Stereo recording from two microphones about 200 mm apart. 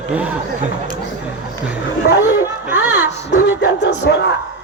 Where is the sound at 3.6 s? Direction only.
60° left (ahead or behind).